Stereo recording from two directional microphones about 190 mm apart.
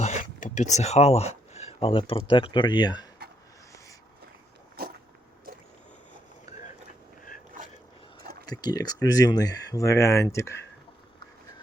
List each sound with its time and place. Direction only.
0.0 s speech: 40° left (ahead or behind); by 3.1 s 20° left (ahead or behind)
8.4 s speech: 20° left (ahead or behind)